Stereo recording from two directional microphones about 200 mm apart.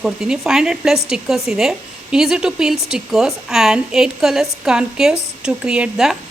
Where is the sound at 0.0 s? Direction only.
5° right (ahead or behind).